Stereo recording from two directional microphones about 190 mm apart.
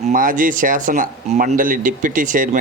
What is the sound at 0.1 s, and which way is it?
Speech, 45° right (ahead or behind).